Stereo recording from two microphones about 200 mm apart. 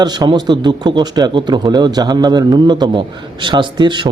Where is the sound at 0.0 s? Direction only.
20° right (ahead or behind).